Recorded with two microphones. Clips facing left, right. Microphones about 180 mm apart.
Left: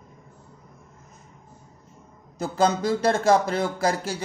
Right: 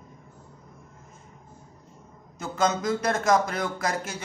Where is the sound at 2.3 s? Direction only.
35° left (ahead or behind).